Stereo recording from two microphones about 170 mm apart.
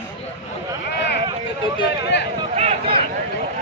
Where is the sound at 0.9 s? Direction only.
80° left.